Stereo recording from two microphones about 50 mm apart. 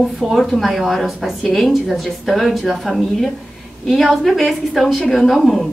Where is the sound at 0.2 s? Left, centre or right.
Centre.